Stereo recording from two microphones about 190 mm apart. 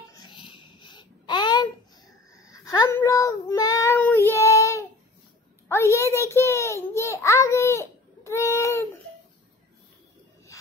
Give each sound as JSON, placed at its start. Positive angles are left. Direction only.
{"t": 0.1, "sound": "babbling", "side_deg": 25}
{"t": 2.3, "sound": "child singing", "side_deg": 20}
{"t": 5.7, "sound": "a sound", "side_deg": 15}
{"t": 8.2, "sound": "baby cry", "side_deg": 15}